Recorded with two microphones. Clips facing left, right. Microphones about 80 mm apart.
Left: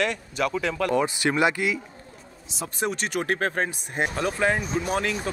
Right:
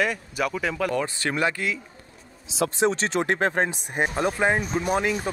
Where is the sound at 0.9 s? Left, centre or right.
Centre.